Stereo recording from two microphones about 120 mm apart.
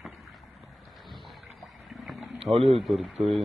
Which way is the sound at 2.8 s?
Centre (ahead or behind).